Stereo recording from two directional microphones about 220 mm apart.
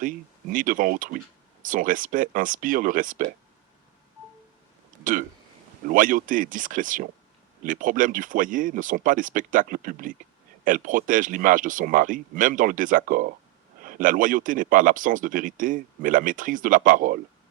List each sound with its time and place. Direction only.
0.5 s speech: 40° right (ahead or behind)
5.9 s speech: 40° right (ahead or behind)